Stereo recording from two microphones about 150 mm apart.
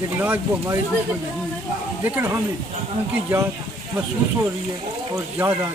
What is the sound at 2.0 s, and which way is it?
Speech, 15° right (ahead or behind).